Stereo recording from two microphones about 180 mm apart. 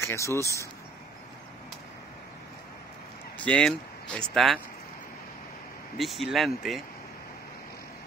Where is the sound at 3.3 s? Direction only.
5° left (ahead or behind).